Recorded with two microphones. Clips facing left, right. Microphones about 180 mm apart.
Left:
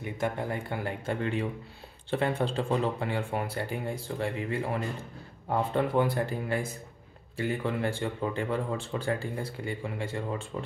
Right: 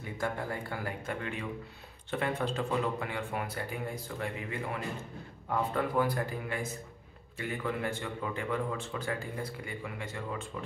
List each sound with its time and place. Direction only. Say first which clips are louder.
0.0 s speech: left 4 dB; 20° left (ahead or behind)